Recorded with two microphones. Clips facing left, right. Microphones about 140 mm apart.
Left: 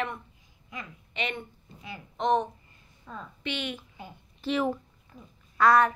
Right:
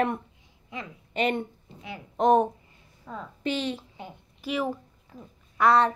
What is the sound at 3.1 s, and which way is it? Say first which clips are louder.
Speech: right 3 dB; 15° right (ahead or behind).